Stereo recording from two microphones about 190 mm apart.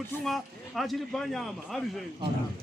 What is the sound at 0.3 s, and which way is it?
Speech, centre (ahead or behind).